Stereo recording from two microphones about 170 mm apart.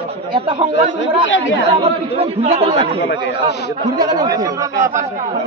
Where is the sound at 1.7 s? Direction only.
35° right (ahead or behind).